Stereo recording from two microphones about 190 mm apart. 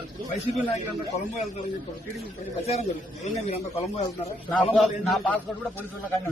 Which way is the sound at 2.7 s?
35° left (ahead or behind).